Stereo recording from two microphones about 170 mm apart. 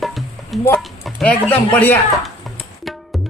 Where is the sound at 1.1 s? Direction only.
5° left (ahead or behind).